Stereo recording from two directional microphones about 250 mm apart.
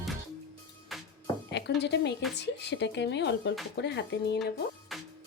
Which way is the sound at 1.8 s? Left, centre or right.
Left.